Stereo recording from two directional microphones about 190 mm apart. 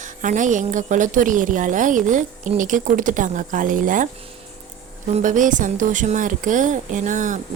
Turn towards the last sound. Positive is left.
turn(degrees=-40)  # may be behind; listen again after turning